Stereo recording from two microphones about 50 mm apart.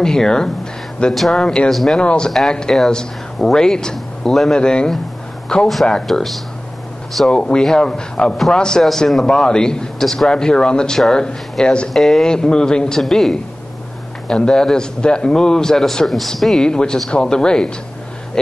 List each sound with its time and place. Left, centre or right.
0.0 s a man's voice: centre
1.7 s speech: centre
2.0 s a man's voice: centre
4.6 s a man's voice: centre
7.2 s a man's voice: centre
11.9 s a man's voice: centre